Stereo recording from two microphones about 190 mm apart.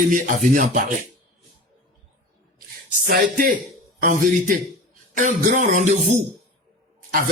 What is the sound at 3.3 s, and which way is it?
Speech, 50° right (ahead or behind).